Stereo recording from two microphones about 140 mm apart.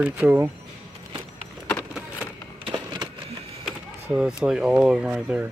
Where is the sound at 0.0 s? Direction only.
10° right (ahead or behind).